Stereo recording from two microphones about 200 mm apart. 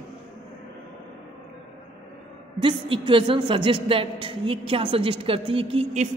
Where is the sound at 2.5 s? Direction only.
25° right (ahead or behind).